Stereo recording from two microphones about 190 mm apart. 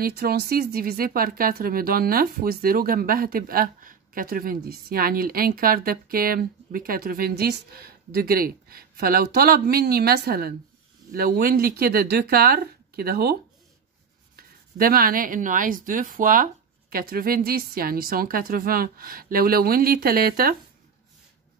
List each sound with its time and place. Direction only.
0.0 s speech: 55° right (ahead or behind)